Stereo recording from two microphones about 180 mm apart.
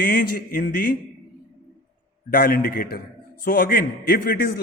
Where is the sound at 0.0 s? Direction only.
50° left (ahead or behind).